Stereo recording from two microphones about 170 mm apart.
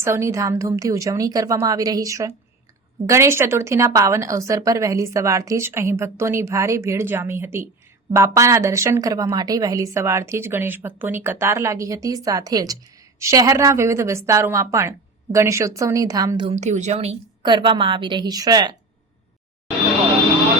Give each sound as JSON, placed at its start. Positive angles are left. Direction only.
{"t": 0.0, "sound": "a woman's voice", "side_deg": -15}
{"t": 16.5, "sound": "speech", "side_deg": -45}
{"t": 17.4, "sound": "a woman's voice", "side_deg": -30}